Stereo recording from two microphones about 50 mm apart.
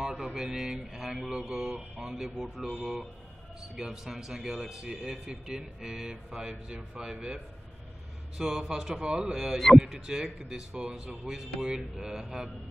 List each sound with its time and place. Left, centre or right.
0.2 s speech: centre
8.4 s speech: centre